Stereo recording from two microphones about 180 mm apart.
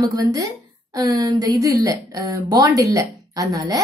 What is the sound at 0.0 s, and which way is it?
A woman's voice, 20° right (ahead or behind).